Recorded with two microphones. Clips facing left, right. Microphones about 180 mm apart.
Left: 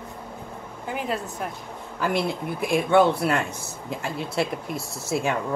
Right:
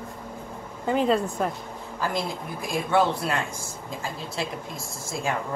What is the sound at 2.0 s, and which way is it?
Speech, 65° left (ahead or behind).